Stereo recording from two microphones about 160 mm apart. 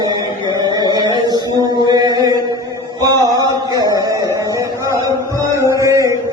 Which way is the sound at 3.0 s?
25° right (ahead or behind).